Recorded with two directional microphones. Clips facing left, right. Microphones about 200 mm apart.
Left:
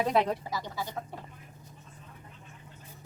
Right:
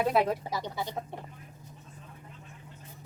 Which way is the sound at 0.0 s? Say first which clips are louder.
Right 1 dB; 5° right (ahead or behind).